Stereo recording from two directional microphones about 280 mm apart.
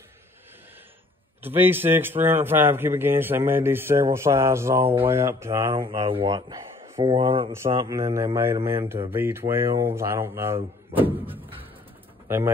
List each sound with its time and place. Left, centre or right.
1.4 s speech: centre